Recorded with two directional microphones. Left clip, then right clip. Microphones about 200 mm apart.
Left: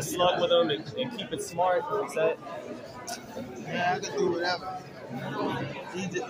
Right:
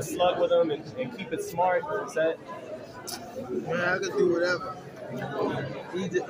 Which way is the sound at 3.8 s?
5° right (ahead or behind).